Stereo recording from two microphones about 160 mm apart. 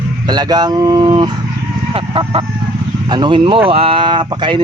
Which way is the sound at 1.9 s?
35° right (ahead or behind).